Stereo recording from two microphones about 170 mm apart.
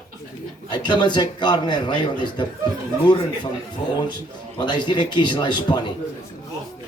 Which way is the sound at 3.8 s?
40° left (ahead or behind).